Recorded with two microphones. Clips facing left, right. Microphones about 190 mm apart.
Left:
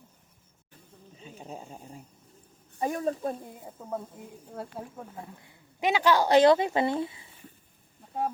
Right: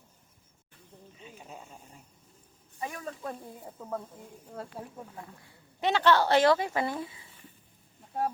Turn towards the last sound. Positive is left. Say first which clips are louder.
# left 5 dB
turn(degrees=25)  # may be behind; listen again after turning